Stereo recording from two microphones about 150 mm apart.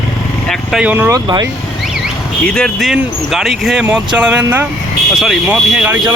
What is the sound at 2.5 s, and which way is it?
Speech, 5° left (ahead or behind).